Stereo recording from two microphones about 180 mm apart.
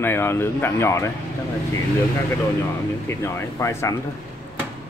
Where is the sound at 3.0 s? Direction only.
15° left (ahead or behind).